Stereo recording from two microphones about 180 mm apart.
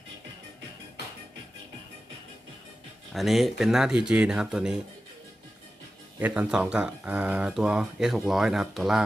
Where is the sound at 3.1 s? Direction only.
Centre (ahead or behind).